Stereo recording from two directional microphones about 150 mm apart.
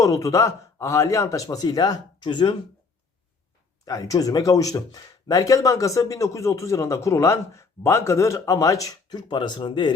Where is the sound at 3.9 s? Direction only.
20° left (ahead or behind).